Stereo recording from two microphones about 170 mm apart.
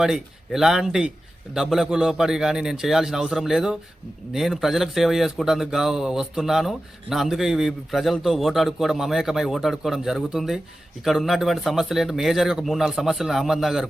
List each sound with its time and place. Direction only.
0.0 s speech: centre (ahead or behind)